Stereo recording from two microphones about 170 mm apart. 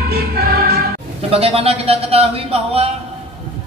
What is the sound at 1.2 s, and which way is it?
Speech, 35° right (ahead or behind).